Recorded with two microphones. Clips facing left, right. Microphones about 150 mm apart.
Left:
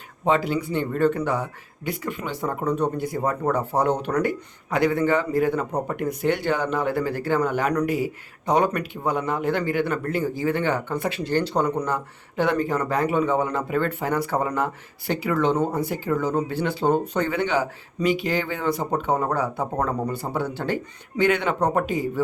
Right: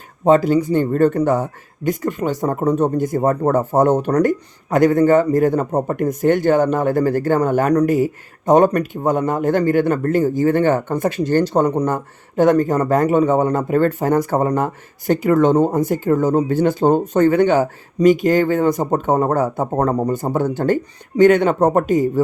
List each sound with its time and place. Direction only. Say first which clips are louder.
0.3 s speech: right 9 dB; 40° right (ahead or behind)